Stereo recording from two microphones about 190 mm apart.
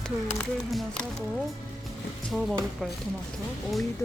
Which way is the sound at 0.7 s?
Centre (ahead or behind).